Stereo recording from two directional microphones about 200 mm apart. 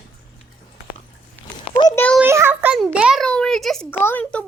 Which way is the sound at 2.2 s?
10° right (ahead or behind).